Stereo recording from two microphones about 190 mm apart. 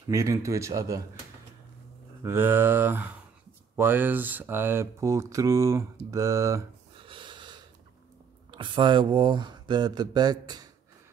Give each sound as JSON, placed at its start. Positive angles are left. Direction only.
{"t": 0.1, "sound": "speech", "side_deg": -15}
{"t": 2.2, "sound": "speech", "side_deg": -10}
{"t": 7.0, "sound": "snort", "side_deg": -25}
{"t": 8.5, "sound": "speech", "side_deg": -25}